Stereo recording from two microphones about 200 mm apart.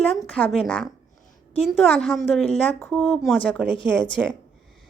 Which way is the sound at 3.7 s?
25° left (ahead or behind).